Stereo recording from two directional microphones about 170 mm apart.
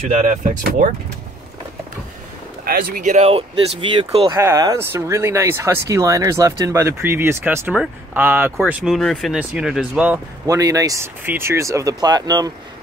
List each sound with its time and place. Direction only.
0.1 s speech: 50° right (ahead or behind)
2.6 s speech: 60° right (ahead or behind); by 4.3 s 35° right (ahead or behind)
4.3 s speech: 20° right (ahead or behind)
10.4 s speech: 20° right (ahead or behind)